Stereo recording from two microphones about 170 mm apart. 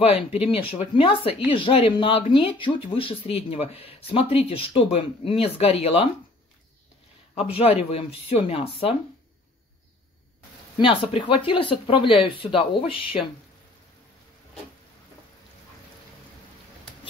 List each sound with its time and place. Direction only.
0.0 s speech: 35° left (ahead or behind)
7.3 s speech: 35° left (ahead or behind)
10.8 s speech: 30° left (ahead or behind)